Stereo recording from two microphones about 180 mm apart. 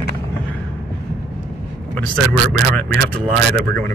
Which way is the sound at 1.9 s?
10° left (ahead or behind).